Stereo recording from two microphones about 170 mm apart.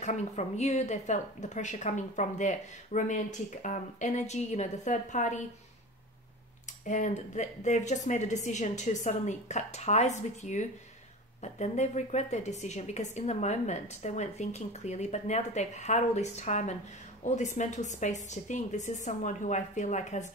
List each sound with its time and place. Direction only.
0.0 s a woman's voice: 40° left (ahead or behind)
6.6 s a woman's voice: 45° left (ahead or behind)